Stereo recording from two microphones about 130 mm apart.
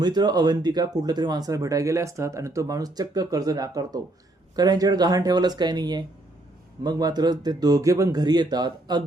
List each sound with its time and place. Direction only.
0.0 s speech: 35° right (ahead or behind)